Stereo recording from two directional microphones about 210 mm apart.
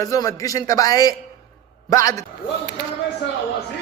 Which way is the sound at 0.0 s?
15° left (ahead or behind).